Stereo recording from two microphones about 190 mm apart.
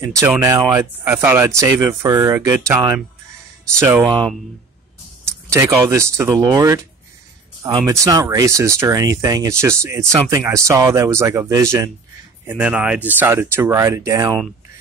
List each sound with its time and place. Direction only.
0.2 s speech: 15° right (ahead or behind)
5.2 s speech: 15° right (ahead or behind)